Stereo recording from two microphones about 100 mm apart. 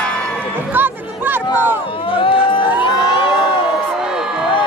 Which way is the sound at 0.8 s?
20° right (ahead or behind).